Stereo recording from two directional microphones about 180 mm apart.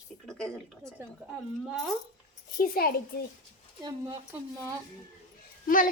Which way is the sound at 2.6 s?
55° left (ahead or behind).